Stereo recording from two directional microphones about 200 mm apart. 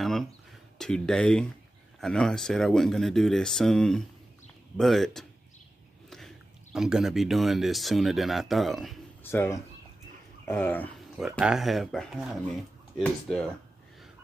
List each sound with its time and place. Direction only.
0.0 s a sound: centre (ahead or behind)
0.7 s speech: 5° left (ahead or behind)
9.2 s speech: 10° left (ahead or behind)
11.1 s speech: centre (ahead or behind)